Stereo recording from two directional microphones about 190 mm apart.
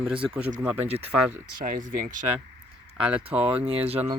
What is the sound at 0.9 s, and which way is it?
Speech, 35° right (ahead or behind).